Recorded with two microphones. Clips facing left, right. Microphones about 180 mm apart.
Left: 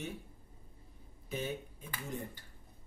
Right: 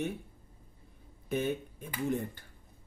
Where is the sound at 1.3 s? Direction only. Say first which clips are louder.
Right 7 dB; 60° right (ahead or behind).